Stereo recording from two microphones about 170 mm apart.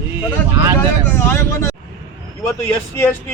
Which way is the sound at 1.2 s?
15° left (ahead or behind).